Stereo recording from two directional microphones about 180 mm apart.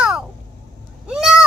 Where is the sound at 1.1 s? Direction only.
5° right (ahead or behind).